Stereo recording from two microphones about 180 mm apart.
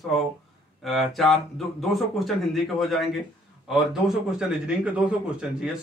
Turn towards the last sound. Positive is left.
turn(degrees=-5)  # may be behind; listen again after turning